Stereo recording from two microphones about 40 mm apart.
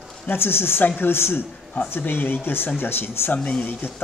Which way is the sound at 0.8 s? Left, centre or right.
Left.